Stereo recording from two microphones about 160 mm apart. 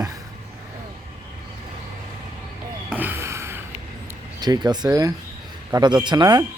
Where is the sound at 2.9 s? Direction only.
10° right (ahead or behind).